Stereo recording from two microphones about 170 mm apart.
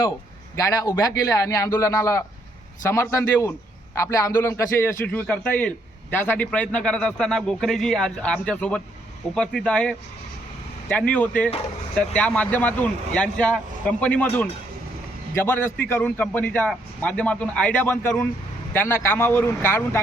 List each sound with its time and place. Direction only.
0.5 s a man's voice: 20° left (ahead or behind)